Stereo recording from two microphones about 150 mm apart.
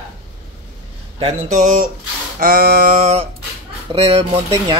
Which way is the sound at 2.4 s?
85° right.